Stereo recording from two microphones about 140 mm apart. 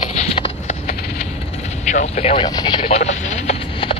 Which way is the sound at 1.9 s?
50° left (ahead or behind).